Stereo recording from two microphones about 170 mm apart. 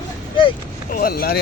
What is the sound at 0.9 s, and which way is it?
Speech, 60° left (ahead or behind).